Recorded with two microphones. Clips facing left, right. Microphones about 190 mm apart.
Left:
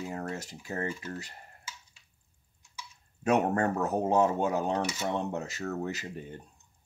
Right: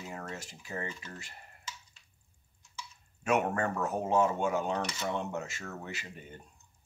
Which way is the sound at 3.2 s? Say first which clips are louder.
Left 3 dB; 35° left (ahead or behind).